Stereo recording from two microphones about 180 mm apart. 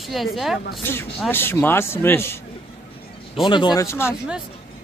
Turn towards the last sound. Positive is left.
turn(degrees=15)  # may be behind; listen again after turning